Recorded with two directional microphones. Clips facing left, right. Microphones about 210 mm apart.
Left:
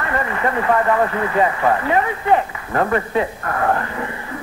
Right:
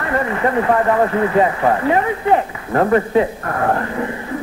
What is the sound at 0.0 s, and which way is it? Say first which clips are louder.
A man's voice: right 3 dB; 35° right (ahead or behind).